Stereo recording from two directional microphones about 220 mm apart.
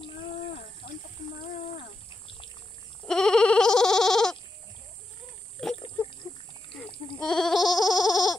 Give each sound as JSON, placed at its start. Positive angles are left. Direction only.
{"t": 3.1, "sound": "goat", "side_deg": 5}
{"t": 5.6, "sound": "a sound", "side_deg": 25}
{"t": 7.2, "sound": "goat", "side_deg": 0}